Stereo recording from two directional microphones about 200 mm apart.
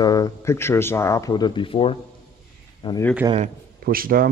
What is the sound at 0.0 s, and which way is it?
Speech, 20° left (ahead or behind).